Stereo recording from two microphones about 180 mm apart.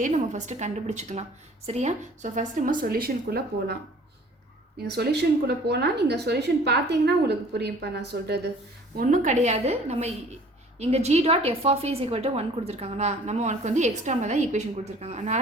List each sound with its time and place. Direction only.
0.0 s a woman's voice: 40° right (ahead or behind); by 3.8 s 60° right (ahead or behind)
4.9 s a woman's voice: 65° right (ahead or behind)
9.0 s a woman's voice: 45° right (ahead or behind)